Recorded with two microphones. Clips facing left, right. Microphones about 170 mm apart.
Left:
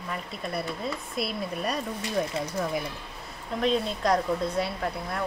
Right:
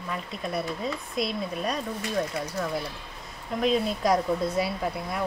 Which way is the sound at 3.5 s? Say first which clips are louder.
Right 1 dB; 5° right (ahead or behind).